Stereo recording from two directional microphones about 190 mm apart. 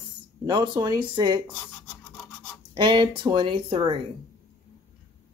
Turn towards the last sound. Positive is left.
turn(degrees=-25)  # may be behind; listen again after turning